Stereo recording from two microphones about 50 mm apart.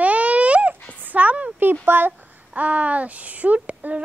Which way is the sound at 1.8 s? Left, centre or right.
Right.